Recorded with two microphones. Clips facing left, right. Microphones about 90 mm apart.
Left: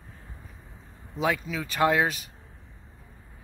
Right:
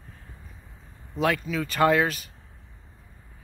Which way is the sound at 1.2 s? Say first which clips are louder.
Right 2 dB; 10° left (ahead or behind).